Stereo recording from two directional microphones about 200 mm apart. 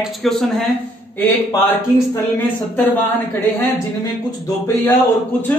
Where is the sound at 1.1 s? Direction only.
10° left (ahead or behind).